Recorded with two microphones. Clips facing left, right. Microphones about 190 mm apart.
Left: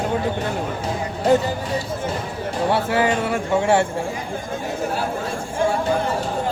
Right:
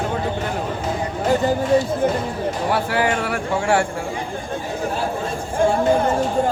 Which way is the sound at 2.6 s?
25° left (ahead or behind).